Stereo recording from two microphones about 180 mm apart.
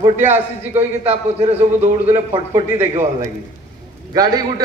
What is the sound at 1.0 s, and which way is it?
Speech, 35° right (ahead or behind).